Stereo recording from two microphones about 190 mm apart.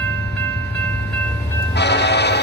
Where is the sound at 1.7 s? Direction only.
65° left (ahead or behind).